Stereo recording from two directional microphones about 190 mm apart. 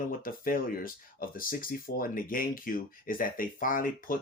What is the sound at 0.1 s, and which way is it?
Speech, 50° left (ahead or behind).